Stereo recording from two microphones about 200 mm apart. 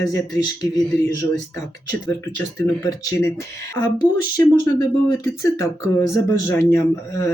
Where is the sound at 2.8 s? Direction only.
15° left (ahead or behind).